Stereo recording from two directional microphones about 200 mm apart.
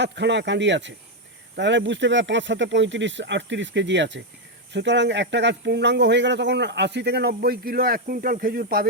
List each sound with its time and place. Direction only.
0.0 s speech: 60° right (ahead or behind)